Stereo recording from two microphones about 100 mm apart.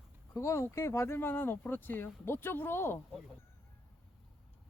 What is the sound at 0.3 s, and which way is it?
Speech, 30° left (ahead or behind).